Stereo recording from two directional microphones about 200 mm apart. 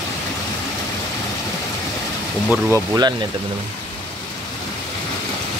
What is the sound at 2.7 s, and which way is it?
Speech, 15° right (ahead or behind).